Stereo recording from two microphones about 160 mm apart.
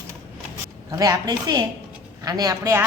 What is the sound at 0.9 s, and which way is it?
A woman's voice, 20° right (ahead or behind).